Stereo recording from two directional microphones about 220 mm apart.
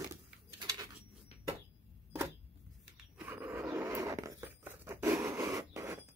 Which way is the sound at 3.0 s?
5° right (ahead or behind).